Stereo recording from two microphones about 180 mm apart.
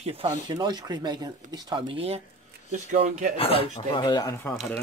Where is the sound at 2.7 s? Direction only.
40° right (ahead or behind).